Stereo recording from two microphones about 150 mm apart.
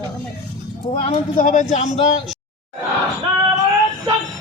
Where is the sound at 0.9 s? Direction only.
50° left (ahead or behind).